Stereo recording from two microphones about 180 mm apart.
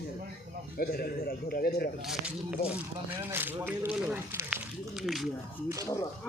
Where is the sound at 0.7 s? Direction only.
60° left (ahead or behind).